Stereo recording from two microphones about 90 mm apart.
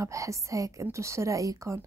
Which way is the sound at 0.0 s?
35° right (ahead or behind).